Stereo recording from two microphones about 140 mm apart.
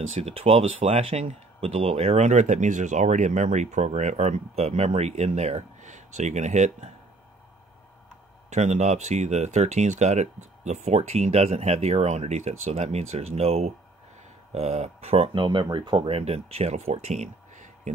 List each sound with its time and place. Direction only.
0.1 s speech: 45° right (ahead or behind)
8.5 s speech: 55° right (ahead or behind)